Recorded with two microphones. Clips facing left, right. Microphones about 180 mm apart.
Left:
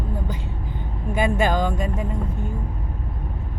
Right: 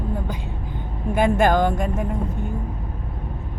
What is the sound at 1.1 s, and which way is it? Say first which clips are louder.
Speech: right 3 dB; 55° right (ahead or behind).